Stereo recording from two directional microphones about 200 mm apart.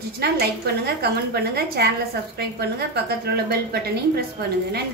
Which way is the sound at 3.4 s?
50° right (ahead or behind).